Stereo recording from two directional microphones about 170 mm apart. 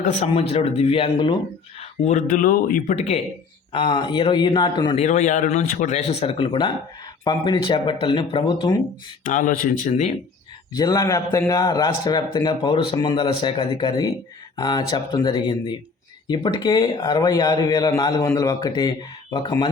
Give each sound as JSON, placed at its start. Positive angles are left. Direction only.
{"t": 0.0, "sound": "speech", "side_deg": 40}
{"t": 1.8, "sound": "speech", "side_deg": 45}
{"t": 3.7, "sound": "speech", "side_deg": 25}
{"t": 4.9, "sound": "speech", "side_deg": 45}
{"t": 9.2, "sound": "speech", "side_deg": 50}
{"t": 10.8, "sound": "speech", "side_deg": 20}